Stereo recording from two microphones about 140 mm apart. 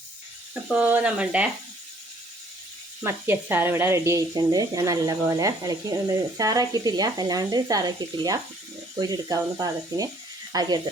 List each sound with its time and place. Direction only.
0.7 s speech: 10° right (ahead or behind)
3.0 s speech: 15° right (ahead or behind)